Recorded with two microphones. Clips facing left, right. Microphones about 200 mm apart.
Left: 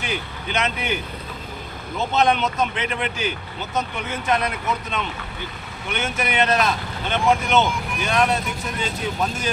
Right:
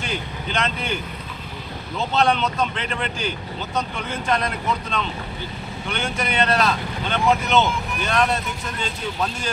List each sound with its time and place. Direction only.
0.0 s speech: 15° left (ahead or behind)
2.0 s speech: 15° left (ahead or behind)
4.1 s speech: 10° left (ahead or behind)
5.9 s speech: 20° left (ahead or behind)